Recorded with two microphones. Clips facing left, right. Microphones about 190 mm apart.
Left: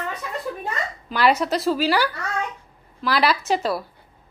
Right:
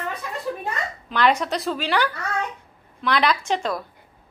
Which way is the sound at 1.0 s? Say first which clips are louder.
Left 1 dB; 5° left (ahead or behind).